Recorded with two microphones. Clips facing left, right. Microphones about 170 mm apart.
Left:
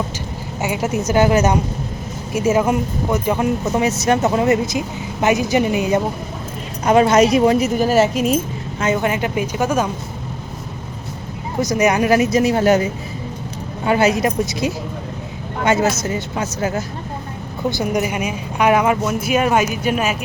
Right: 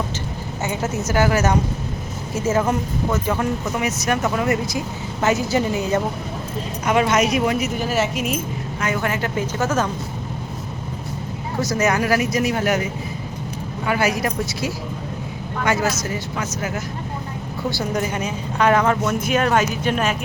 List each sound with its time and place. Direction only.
0.6 s a woman's voice: 10° left (ahead or behind)
6.8 s speech: 35° left (ahead or behind)
8.8 s a woman's voice: 20° left (ahead or behind)
11.6 s speech: 15° left (ahead or behind)
17.7 s a woman's voice: 15° left (ahead or behind)